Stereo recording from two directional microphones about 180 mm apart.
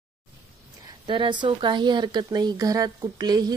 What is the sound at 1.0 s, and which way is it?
Speech, 25° right (ahead or behind).